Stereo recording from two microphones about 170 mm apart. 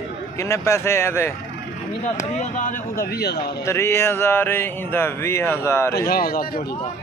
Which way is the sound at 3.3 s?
15° left (ahead or behind).